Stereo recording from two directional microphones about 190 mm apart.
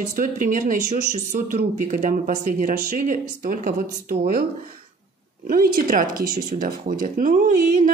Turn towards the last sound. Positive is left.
turn(degrees=-40)  # may be behind; listen again after turning